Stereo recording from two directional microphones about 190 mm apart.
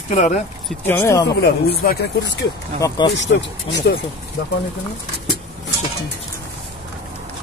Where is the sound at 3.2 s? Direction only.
65° left (ahead or behind).